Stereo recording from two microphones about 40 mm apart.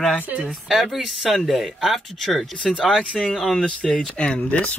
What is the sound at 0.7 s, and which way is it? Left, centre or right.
Speech, centre.